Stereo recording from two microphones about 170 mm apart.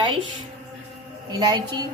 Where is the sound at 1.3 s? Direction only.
20° right (ahead or behind).